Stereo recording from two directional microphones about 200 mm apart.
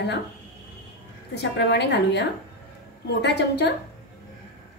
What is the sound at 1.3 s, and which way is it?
A woman's voice, 55° left (ahead or behind).